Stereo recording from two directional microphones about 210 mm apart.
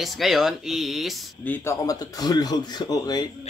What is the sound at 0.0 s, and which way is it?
Speech, centre (ahead or behind).